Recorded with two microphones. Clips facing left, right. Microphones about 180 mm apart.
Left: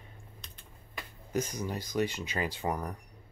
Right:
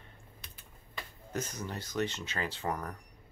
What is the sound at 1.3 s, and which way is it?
Speech, 10° left (ahead or behind).